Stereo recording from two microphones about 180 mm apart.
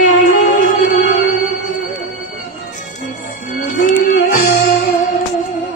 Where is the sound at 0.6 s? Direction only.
50° left (ahead or behind).